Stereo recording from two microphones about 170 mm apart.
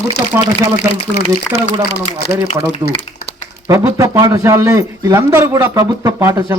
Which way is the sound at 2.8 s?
25° right (ahead or behind).